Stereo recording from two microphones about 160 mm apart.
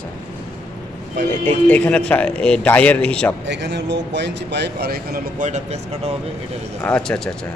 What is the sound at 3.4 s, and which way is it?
Speech, 90° right.